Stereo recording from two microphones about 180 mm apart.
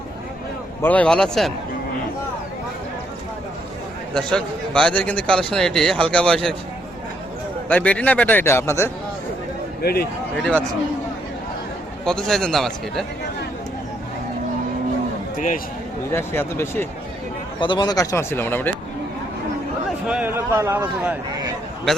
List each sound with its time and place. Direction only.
0.8 s a man's voice: 10° left (ahead or behind)
4.1 s a man's voice: 5° left (ahead or behind)
7.7 s a man's voice: 10° left (ahead or behind)
9.8 s a man's voice: 60° left (ahead or behind)
12.0 s a man's voice: 5° left (ahead or behind)
15.4 s a man's voice: 50° left (ahead or behind)
16.1 s a man's voice: 15° left (ahead or behind)
17.6 s a man's voice: 25° left (ahead or behind)
20.1 s speech: 10° right (ahead or behind)